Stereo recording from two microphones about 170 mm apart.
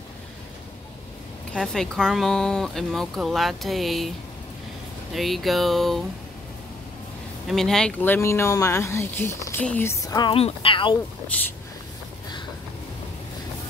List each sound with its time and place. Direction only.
1.5 s speech: 5° left (ahead or behind)
5.1 s speech: centre (ahead or behind)
7.4 s speech: centre (ahead or behind); by 11.0 s 30° left (ahead or behind)